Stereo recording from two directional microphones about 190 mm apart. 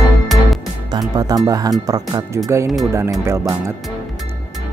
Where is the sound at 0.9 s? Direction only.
20° right (ahead or behind).